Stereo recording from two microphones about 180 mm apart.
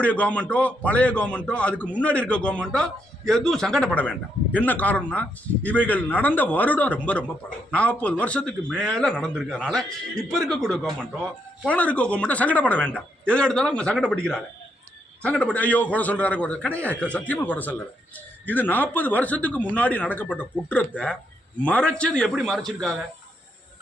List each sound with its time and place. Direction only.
0.0 s a man's voice: 5° left (ahead or behind)